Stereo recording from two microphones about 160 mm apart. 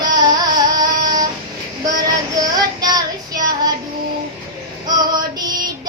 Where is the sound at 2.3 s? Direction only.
25° right (ahead or behind).